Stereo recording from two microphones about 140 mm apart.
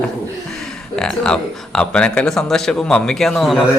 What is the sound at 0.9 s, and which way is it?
Speech, 5° left (ahead or behind).